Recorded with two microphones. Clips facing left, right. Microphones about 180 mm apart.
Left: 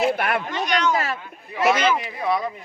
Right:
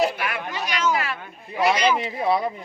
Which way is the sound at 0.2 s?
55° left (ahead or behind).